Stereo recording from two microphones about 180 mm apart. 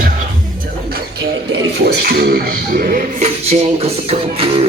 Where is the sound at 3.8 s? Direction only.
35° right (ahead or behind).